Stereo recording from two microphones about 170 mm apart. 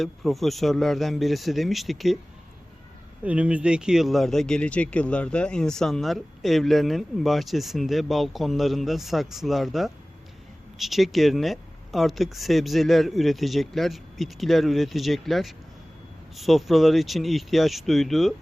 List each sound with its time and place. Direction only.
0.0 s speech: centre (ahead or behind)
3.2 s speech: 5° right (ahead or behind)